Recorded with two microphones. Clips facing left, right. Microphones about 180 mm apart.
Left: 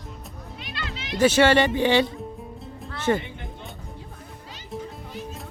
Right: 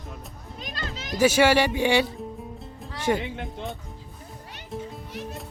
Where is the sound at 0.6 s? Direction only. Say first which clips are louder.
Right 1 dB; 40° right (ahead or behind).